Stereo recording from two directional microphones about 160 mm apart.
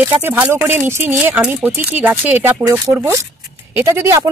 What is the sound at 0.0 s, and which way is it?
Speech, 10° right (ahead or behind).